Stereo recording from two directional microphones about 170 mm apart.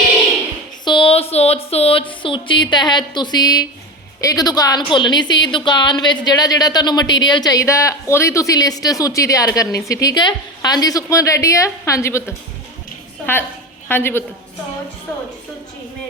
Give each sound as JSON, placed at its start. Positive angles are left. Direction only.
{"t": 0.9, "sound": "speech", "side_deg": 30}
{"t": 13.3, "sound": "a woman's voice", "side_deg": 15}